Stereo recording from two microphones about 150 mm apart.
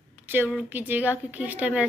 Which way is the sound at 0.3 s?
10° right (ahead or behind).